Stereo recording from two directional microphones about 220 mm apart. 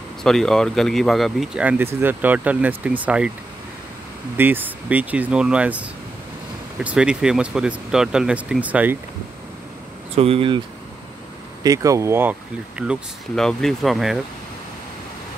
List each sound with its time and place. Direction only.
0.2 s speech: centre (ahead or behind)
4.4 s speech: 10° right (ahead or behind)
10.1 s speech: 25° right (ahead or behind)
11.6 s speech: 15° right (ahead or behind)